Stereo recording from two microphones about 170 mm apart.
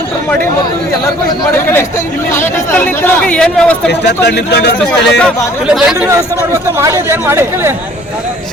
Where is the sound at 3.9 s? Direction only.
80° left.